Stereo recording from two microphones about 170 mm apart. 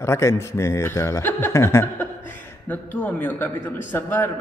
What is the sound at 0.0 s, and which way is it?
Speech, 15° left (ahead or behind).